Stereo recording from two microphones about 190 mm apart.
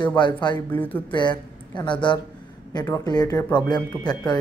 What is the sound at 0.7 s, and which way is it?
Speech, 10° left (ahead or behind).